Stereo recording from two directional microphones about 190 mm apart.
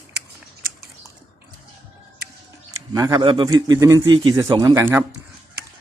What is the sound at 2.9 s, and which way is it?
Speech, 15° right (ahead or behind).